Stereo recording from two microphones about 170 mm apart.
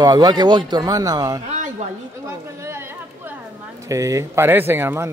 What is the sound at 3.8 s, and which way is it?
Speech, 20° right (ahead or behind).